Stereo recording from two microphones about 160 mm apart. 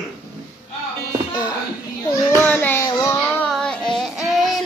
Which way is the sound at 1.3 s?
25° left (ahead or behind).